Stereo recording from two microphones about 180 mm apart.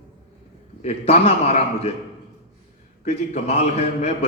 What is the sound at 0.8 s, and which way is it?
A man's voice, 35° left (ahead or behind).